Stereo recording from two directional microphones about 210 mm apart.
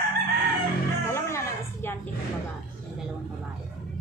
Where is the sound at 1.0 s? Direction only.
15° left (ahead or behind).